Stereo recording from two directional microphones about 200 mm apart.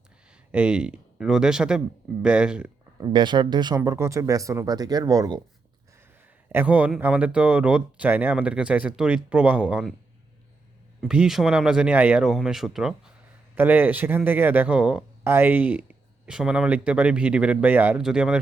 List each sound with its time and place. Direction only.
0.3 s speech: 5° right (ahead or behind)
3.0 s speech: 20° right (ahead or behind)
6.5 s speech: 10° right (ahead or behind)
11.1 s speech: 5° right (ahead or behind)